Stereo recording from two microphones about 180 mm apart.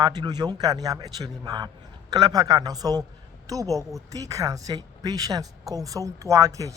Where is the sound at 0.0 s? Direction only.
25° right (ahead or behind).